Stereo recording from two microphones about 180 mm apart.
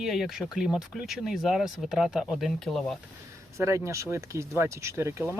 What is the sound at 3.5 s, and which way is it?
Speech, 15° right (ahead or behind).